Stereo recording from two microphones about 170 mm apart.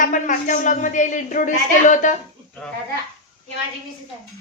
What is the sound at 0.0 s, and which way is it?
A woman's voice, 50° left (ahead or behind).